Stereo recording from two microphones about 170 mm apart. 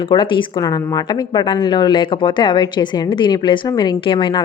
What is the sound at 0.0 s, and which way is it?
A woman's voice, 30° left (ahead or behind).